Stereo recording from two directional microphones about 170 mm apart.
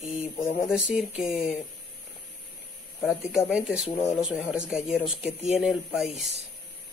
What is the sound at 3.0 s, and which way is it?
Speech, 5° right (ahead or behind).